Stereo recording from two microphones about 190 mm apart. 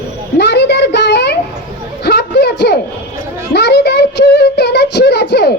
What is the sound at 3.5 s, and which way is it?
Child singing, 60° left (ahead or behind).